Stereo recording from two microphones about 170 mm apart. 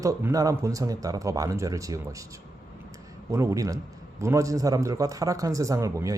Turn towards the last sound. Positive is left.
turn(degrees=-20)  # may be behind; listen again after turning